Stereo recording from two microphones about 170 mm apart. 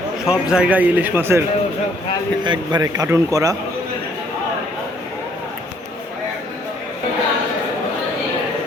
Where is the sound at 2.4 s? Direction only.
25° right (ahead or behind).